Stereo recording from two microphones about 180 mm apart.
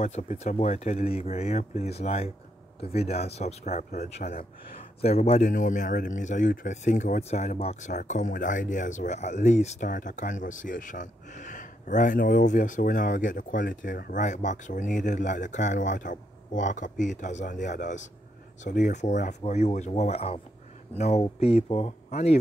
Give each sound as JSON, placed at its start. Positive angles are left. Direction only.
{"t": 0.0, "sound": "a man's voice", "side_deg": 40}